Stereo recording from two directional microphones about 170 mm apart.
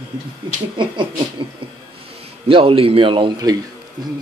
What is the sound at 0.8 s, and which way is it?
Speech, 30° right (ahead or behind).